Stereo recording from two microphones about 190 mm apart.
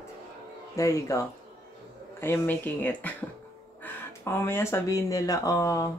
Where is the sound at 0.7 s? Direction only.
15° left (ahead or behind).